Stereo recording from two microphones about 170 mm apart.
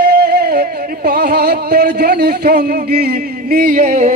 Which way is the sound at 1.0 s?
70° right (ahead or behind).